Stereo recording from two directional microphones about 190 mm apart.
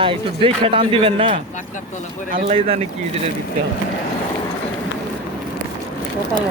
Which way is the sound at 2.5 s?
30° right (ahead or behind).